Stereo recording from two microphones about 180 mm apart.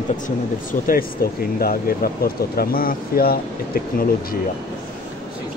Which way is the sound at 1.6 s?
55° left (ahead or behind).